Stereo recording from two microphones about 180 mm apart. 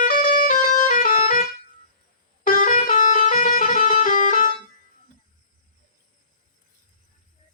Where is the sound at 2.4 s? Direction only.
50° left (ahead or behind).